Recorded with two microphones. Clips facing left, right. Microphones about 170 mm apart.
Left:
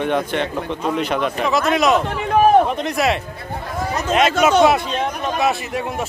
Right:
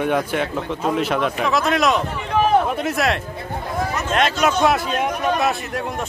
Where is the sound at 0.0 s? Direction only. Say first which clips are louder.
Even; 5° right (ahead or behind).